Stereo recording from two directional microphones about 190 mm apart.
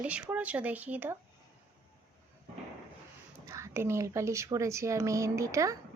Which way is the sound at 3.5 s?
15° right (ahead or behind).